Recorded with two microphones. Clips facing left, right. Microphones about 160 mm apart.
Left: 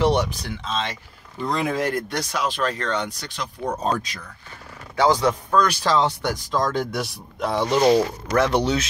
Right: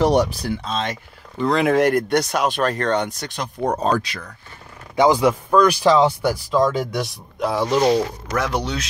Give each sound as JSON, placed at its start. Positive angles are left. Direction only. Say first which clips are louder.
{"t": 0.0, "sound": "speech", "louder": "right 3 dB", "side_deg": -40}
{"t": 1.4, "sound": "speech", "louder": "right 7 dB", "side_deg": -80}
{"t": 3.8, "sound": "speech", "louder": "right 4 dB", "side_deg": -75}
{"t": 4.9, "sound": "speech", "louder": "right 3 dB", "side_deg": -10}